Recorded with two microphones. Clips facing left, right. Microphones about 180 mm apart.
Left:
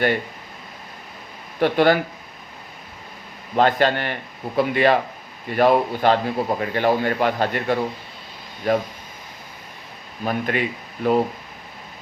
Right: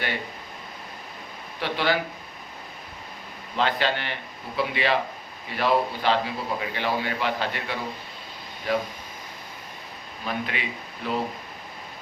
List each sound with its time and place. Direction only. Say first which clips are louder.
1.5 s a man's voice: left 9 dB; 50° left (ahead or behind)
3.5 s a man's voice: left 7 dB; 50° left (ahead or behind)
10.2 s a man's voice: left 7 dB; 50° left (ahead or behind)